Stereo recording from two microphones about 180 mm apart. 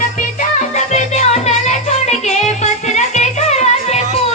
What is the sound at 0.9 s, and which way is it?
Music, 40° left (ahead or behind).